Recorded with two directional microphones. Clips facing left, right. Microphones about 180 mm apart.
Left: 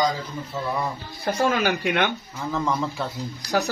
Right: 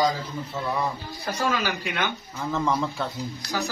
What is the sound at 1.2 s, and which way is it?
Speech, 55° left (ahead or behind).